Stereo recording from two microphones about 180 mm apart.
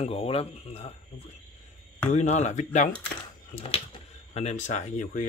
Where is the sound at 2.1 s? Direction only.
40° left (ahead or behind).